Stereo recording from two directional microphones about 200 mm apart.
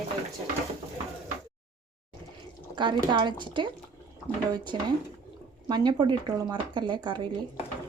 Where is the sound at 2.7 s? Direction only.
25° right (ahead or behind).